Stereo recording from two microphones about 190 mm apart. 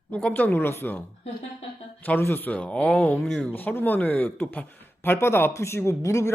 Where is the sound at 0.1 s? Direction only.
5° left (ahead or behind).